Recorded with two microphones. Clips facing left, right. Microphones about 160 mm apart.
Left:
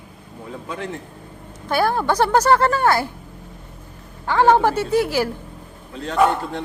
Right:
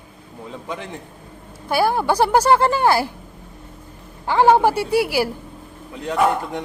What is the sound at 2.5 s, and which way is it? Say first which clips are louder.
Speech: right 1 dB; 25° right (ahead or behind).